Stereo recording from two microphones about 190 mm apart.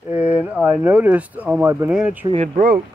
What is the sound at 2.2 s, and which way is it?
Speech, 30° right (ahead or behind).